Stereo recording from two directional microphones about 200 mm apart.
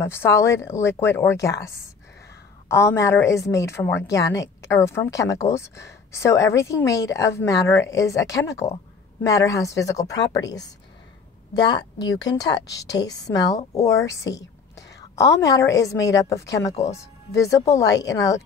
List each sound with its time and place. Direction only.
0.0 s a woman's voice: 10° left (ahead or behind)
2.7 s a woman's voice: 15° left (ahead or behind)